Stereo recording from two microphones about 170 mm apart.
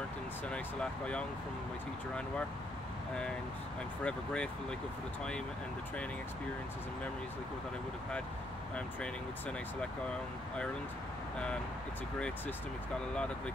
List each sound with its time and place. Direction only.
4.0 s speech: 5° left (ahead or behind)